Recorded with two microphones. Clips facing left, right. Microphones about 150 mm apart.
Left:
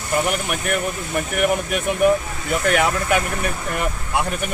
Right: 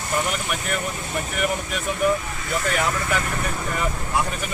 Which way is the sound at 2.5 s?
65° left (ahead or behind).